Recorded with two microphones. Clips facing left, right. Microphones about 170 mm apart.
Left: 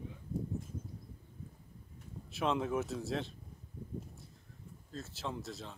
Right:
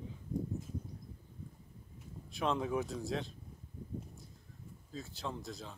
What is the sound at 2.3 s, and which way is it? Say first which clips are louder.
Speech: left 1 dB; centre (ahead or behind).